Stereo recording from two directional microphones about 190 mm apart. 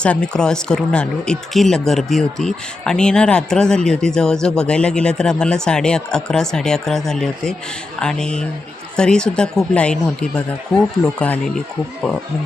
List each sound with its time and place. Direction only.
0.0 s speech: 5° left (ahead or behind)